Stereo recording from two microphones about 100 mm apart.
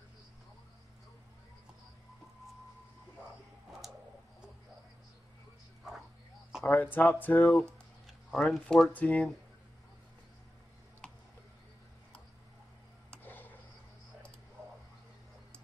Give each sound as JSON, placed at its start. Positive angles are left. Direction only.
{"t": 6.6, "sound": "speech", "side_deg": 15}
{"t": 7.1, "sound": "mantra", "side_deg": 20}
{"t": 7.4, "sound": "a sound", "side_deg": 0}
{"t": 8.5, "sound": "speech", "side_deg": 5}
{"t": 8.9, "sound": "speech", "side_deg": 15}
{"t": 13.2, "sound": "a sound", "side_deg": 20}